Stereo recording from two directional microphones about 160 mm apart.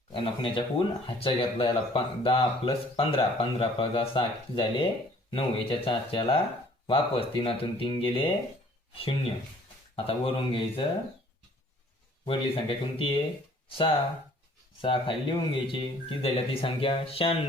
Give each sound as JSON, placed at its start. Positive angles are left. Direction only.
{"t": 0.1, "sound": "speech", "side_deg": 30}
{"t": 9.9, "sound": "speech", "side_deg": 35}
{"t": 12.2, "sound": "speech", "side_deg": 35}